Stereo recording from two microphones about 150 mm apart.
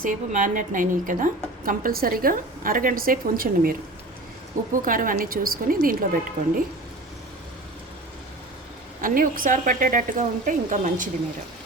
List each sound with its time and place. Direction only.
0.0 s a woman's voice: 60° right (ahead or behind)
9.0 s a woman's voice: 65° right (ahead or behind)